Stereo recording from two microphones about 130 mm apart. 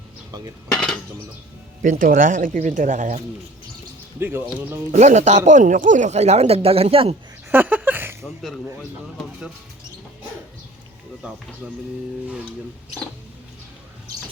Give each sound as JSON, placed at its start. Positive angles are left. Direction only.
{"t": 0.3, "sound": "cutlery", "side_deg": -25}
{"t": 0.7, "sound": "cutlery", "side_deg": 5}
{"t": 1.8, "sound": "speech", "side_deg": -85}
{"t": 4.2, "sound": "speech", "side_deg": -15}
{"t": 4.9, "sound": "speech", "side_deg": -60}
{"t": 5.5, "sound": "speech", "side_deg": -75}
{"t": 7.5, "sound": "a sound", "side_deg": -15}
{"t": 8.2, "sound": "speech", "side_deg": 0}
{"t": 11.6, "sound": "speech", "side_deg": -10}